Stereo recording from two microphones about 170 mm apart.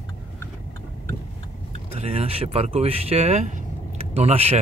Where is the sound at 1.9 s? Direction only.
35° right (ahead or behind).